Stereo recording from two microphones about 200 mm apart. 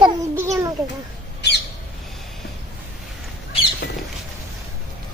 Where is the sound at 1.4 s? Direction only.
55° left (ahead or behind).